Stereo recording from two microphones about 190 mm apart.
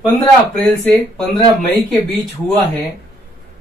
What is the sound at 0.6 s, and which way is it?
Speech, 5° left (ahead or behind).